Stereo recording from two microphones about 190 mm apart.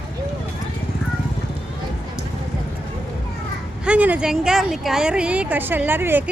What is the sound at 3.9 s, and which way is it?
A woman's voice, 5° right (ahead or behind).